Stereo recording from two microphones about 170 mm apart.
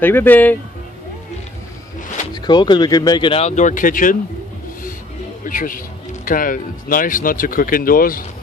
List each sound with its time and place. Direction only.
0.0 s speech: 10° left (ahead or behind)
2.3 s speech: 25° left (ahead or behind); by 4.2 s 55° left (ahead or behind)
5.4 s speech: 50° left (ahead or behind)